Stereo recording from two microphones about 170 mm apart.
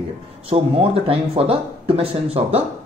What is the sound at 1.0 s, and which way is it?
Speech, 35° right (ahead or behind).